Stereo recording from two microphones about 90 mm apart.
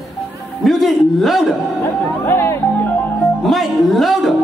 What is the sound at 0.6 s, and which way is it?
Speech, centre (ahead or behind).